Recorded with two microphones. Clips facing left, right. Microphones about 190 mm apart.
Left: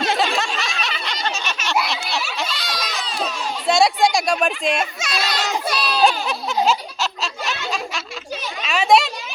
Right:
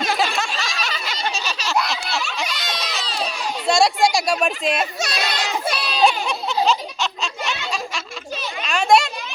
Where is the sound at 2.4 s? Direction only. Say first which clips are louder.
Even; 20° right (ahead or behind).